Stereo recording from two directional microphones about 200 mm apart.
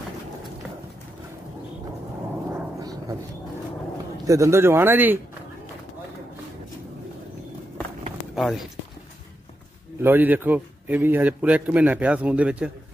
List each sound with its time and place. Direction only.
2.8 s a sound: 20° right (ahead or behind)
4.3 s a man's voice: 15° right (ahead or behind)
8.4 s speech: centre (ahead or behind)
10.0 s a man's voice: 10° right (ahead or behind)